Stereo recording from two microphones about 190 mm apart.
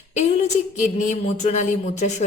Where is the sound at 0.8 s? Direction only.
40° left (ahead or behind).